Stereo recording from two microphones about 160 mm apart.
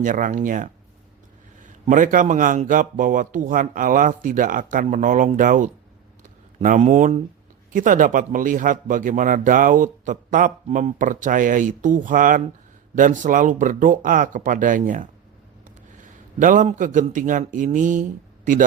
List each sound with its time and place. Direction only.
0.0 s a man's voice: 55° right (ahead or behind)